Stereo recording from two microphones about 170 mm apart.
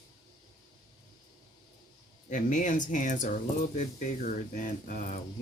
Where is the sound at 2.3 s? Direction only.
50° left (ahead or behind).